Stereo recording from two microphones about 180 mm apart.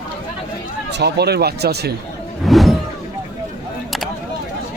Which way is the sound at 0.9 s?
65° right (ahead or behind).